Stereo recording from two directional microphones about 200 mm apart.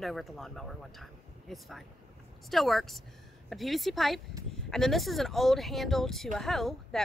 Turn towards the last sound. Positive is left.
turn(degrees=0)  # may be behind; listen again after turning